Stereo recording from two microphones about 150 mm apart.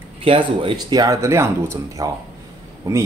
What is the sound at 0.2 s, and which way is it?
Speech, 35° right (ahead or behind).